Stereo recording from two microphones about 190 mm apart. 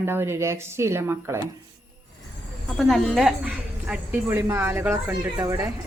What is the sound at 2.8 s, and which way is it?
A woman's voice, centre (ahead or behind).